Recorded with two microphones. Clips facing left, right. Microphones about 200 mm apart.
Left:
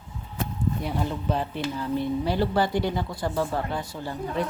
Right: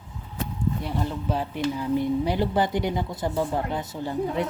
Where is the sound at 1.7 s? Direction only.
15° right (ahead or behind).